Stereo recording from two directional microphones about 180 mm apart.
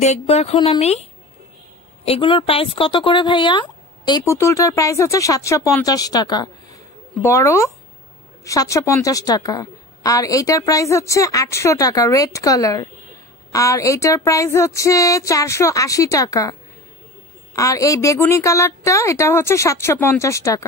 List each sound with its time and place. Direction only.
0.0 s speech: 35° left (ahead or behind)
2.0 s speech: 30° left (ahead or behind)
17.6 s speech: 20° left (ahead or behind)